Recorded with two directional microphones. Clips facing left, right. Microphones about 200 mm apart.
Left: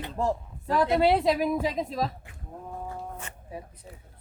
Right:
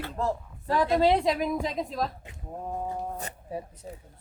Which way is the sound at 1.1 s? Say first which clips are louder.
Left 1 dB; 5° left (ahead or behind).